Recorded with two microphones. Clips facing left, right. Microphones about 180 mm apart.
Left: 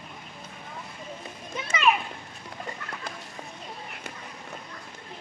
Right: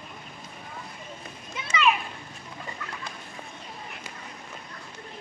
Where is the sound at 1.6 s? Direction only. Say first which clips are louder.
Even; 45° left (ahead or behind).